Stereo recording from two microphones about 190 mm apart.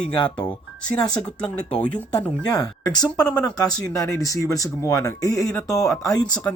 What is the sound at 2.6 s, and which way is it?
Speech, 20° left (ahead or behind).